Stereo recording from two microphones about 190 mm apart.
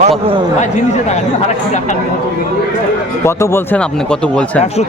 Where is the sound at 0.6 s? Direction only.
35° left (ahead or behind).